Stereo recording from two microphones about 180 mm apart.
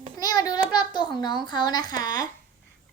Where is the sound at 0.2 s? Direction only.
20° left (ahead or behind).